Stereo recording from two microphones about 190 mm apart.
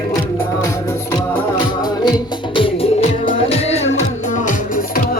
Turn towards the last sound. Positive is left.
turn(degrees=35)  # may be behind; listen again after turning